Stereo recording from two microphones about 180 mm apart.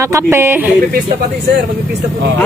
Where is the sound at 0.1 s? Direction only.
15° right (ahead or behind).